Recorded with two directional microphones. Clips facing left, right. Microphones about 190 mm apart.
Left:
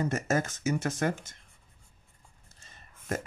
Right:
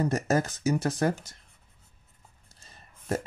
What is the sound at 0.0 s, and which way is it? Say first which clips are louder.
Speech: right 3 dB; 35° right (ahead or behind).